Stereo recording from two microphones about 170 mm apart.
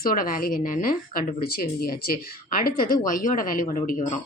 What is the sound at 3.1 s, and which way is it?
Speech, 55° left (ahead or behind).